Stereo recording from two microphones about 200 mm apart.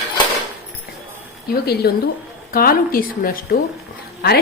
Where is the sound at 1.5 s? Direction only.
50° left (ahead or behind).